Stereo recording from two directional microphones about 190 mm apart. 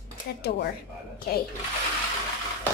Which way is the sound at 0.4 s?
55° left (ahead or behind).